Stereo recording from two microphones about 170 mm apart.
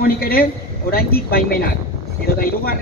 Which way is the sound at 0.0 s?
60° left (ahead or behind).